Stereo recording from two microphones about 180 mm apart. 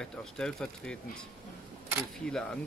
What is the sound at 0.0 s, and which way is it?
Speech, 5° left (ahead or behind).